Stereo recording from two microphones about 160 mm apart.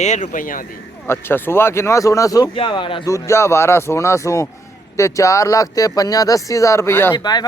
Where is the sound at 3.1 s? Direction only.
15° left (ahead or behind).